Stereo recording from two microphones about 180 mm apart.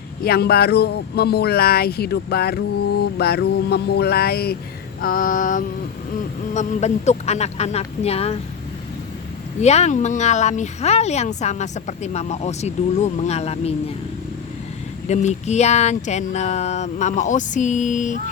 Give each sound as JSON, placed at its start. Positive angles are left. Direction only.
{"t": 0.3, "sound": "speech", "side_deg": 60}
{"t": 4.9, "sound": "mantra", "side_deg": 50}
{"t": 6.5, "sound": "speech", "side_deg": 40}
{"t": 9.6, "sound": "speech", "side_deg": 40}
{"t": 15.0, "sound": "speech", "side_deg": 40}